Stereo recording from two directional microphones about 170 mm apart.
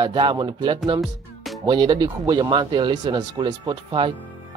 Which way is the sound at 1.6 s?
25° right (ahead or behind).